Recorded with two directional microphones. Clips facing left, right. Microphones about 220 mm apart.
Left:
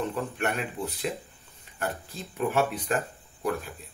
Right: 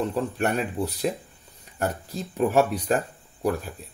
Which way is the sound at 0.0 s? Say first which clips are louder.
Right 4 dB; 35° right (ahead or behind).